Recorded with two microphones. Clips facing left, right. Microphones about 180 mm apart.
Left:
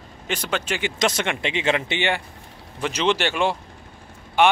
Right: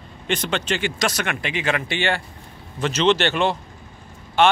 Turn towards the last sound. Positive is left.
turn(degrees=15)  # may be behind; listen again after turning